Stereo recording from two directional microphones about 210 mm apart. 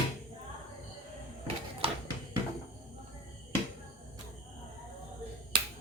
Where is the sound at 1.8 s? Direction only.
25° right (ahead or behind).